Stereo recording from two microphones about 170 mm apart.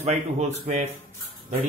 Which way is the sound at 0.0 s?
40° right (ahead or behind).